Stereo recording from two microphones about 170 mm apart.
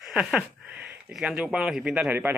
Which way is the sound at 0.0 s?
5° right (ahead or behind).